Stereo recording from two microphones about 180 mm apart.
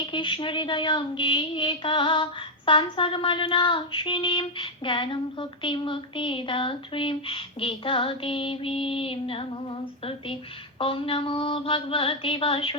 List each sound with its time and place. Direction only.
0.0 s speech: 25° left (ahead or behind)